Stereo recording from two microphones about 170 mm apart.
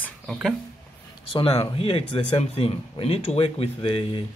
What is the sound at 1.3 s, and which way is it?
Speech, 35° left (ahead or behind).